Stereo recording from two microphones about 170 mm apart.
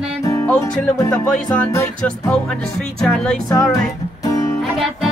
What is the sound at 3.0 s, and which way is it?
Speech, 5° left (ahead or behind).